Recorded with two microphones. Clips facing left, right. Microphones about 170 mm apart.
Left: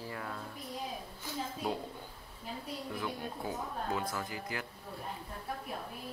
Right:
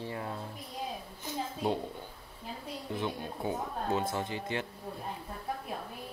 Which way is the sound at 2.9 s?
25° right (ahead or behind).